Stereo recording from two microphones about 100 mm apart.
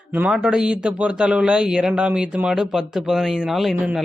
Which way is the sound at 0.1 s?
10° right (ahead or behind).